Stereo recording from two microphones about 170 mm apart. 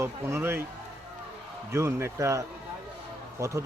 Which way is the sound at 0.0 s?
15° right (ahead or behind).